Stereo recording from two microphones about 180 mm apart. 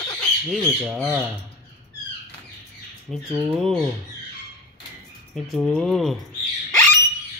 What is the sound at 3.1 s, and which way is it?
Speech, centre (ahead or behind).